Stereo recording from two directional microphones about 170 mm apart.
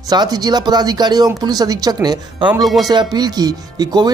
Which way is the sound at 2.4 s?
5° right (ahead or behind).